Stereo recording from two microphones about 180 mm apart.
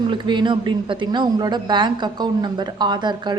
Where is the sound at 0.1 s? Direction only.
25° right (ahead or behind).